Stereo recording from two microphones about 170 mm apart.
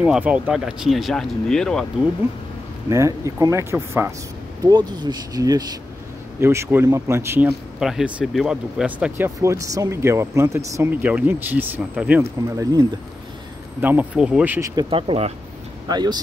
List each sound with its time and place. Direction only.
0.0 s speech: 5° right (ahead or behind)
2.9 s speech: 20° right (ahead or behind)
14.8 s speech: 30° right (ahead or behind)